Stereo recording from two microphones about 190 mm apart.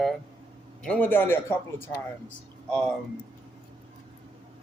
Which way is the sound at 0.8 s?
5° left (ahead or behind).